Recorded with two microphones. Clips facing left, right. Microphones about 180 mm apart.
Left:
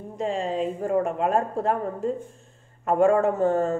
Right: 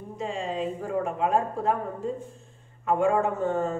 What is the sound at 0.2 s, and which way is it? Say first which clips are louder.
Speech: left 4 dB; 50° left (ahead or behind).